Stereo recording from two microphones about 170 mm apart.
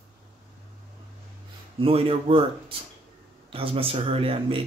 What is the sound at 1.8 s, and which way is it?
Speech, 35° right (ahead or behind).